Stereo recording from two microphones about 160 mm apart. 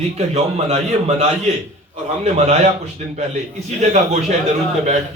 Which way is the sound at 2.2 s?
45° right (ahead or behind).